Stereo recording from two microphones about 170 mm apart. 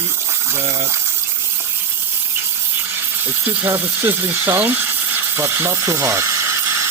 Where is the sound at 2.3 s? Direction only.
15° right (ahead or behind).